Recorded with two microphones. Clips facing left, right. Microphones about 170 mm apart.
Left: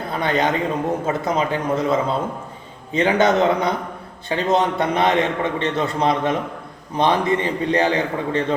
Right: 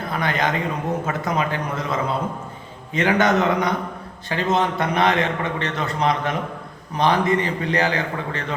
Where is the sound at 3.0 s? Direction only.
25° left (ahead or behind).